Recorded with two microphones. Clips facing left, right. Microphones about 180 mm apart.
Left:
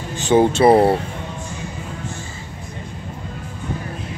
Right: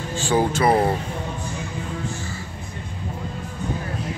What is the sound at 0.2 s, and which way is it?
Speech, 20° left (ahead or behind).